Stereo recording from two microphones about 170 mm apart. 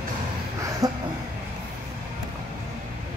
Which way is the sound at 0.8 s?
20° right (ahead or behind).